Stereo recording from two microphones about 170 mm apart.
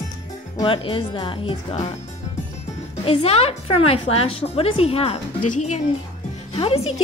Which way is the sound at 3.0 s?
35° left (ahead or behind).